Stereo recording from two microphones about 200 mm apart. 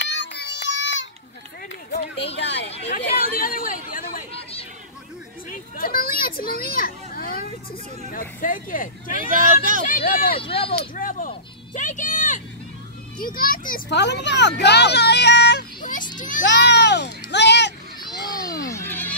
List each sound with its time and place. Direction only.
0.1 s child singing: 60° left (ahead or behind)
2.3 s a child's voice: 60° left (ahead or behind)
2.9 s speech: 45° left (ahead or behind)
5.5 s a child's voice: 45° left (ahead or behind)
9.3 s speech: 40° right (ahead or behind)
9.8 s speech: 45° left (ahead or behind)
10.3 s speech: 25° left (ahead or behind)
11.0 s vehicle: 40° left (ahead or behind)
13.2 s a child's voice: 45° left (ahead or behind)
16.2 s a child's voice: 40° left (ahead or behind)
16.4 s speech: 60° left (ahead or behind)
18.1 s a sound: 20° left (ahead or behind)
18.7 s children playing: 10° left (ahead or behind)